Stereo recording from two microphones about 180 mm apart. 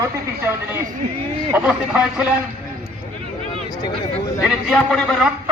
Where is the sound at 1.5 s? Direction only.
5° right (ahead or behind).